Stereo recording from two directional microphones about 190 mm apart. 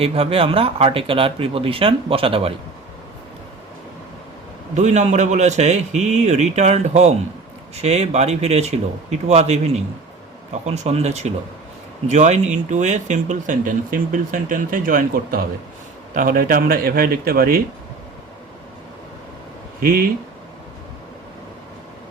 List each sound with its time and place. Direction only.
0.0 s speech: 30° right (ahead or behind)
4.7 s a man's voice: 40° right (ahead or behind)
19.8 s speech: 50° right (ahead or behind)